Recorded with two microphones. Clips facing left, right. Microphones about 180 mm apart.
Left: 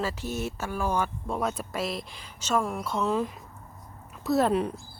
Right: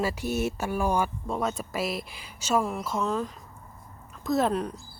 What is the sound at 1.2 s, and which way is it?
Speech, centre (ahead or behind).